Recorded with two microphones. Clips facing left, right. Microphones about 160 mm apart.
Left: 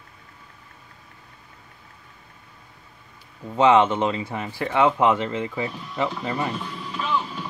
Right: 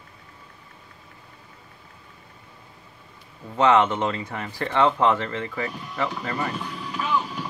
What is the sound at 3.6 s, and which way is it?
Speech, 10° left (ahead or behind).